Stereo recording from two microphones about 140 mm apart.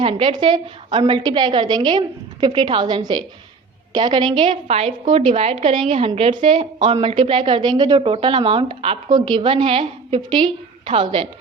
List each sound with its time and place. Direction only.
0.0 s a woman's voice: 40° right (ahead or behind)
9.0 s a woman's voice: 30° right (ahead or behind)